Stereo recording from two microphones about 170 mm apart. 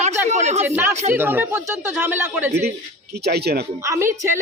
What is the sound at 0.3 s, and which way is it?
Speech, 40° right (ahead or behind).